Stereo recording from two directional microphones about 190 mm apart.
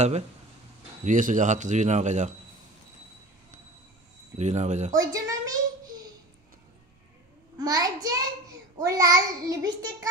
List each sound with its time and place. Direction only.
1.0 s speech: 40° right (ahead or behind)
4.4 s speech: 35° right (ahead or behind)
4.9 s a sound: 20° right (ahead or behind)
7.5 s a child's voice: 20° right (ahead or behind)